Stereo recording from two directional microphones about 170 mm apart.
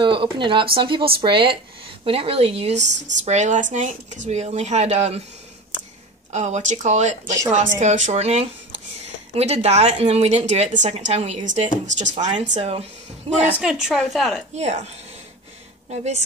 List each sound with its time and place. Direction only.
0.0 s a woman's voice: 30° right (ahead or behind)
6.3 s a woman's voice: 45° right (ahead or behind)
13.5 s a woman's voice: 5° right (ahead or behind)
14.5 s a woman's voice: 40° right (ahead or behind)
15.9 s a woman's voice: 40° right (ahead or behind)